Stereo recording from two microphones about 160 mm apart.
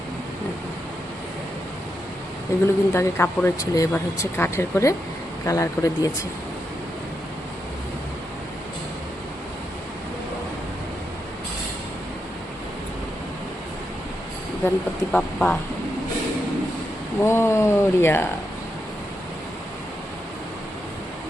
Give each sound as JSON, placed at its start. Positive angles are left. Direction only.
{"t": 2.5, "sound": "speech", "side_deg": 20}
{"t": 14.6, "sound": "speech", "side_deg": 15}
{"t": 17.2, "sound": "speech", "side_deg": 15}